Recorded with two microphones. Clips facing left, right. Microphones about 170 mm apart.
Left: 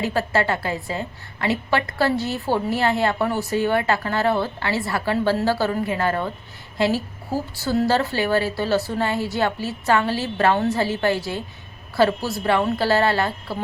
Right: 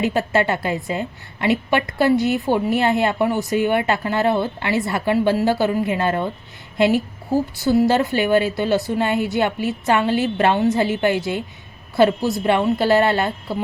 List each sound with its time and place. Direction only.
0.0 s a woman's voice: 20° right (ahead or behind)